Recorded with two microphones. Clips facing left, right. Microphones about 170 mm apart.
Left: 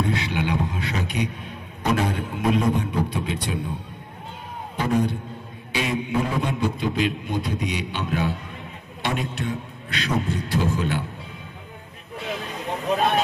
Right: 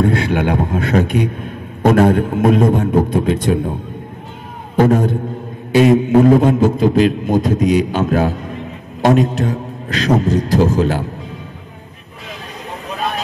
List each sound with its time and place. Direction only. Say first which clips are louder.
0.0 s a man's voice: right 9 dB; 50° right (ahead or behind)
4.7 s a man's voice: right 10 dB; 50° right (ahead or behind)